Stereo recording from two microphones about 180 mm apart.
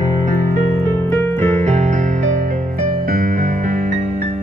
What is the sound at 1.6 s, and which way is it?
Music, 40° right (ahead or behind).